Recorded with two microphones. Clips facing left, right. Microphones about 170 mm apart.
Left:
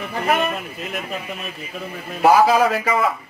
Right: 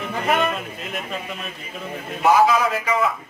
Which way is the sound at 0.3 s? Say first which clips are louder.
Even; 5° left (ahead or behind).